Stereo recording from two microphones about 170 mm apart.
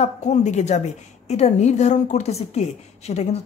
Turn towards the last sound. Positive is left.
turn(degrees=40)  # may be behind; listen again after turning